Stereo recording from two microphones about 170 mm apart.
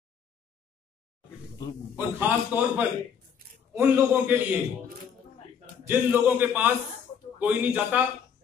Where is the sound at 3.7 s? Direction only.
10° right (ahead or behind).